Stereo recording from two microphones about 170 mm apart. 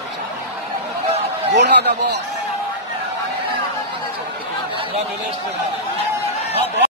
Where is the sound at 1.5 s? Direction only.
85° right.